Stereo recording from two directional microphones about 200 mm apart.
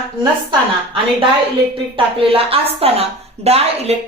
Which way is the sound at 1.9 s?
25° right (ahead or behind).